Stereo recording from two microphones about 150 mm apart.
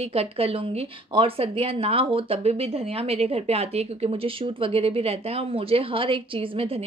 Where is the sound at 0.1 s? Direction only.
40° right (ahead or behind).